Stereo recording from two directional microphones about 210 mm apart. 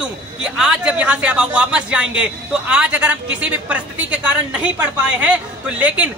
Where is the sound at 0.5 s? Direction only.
5° right (ahead or behind).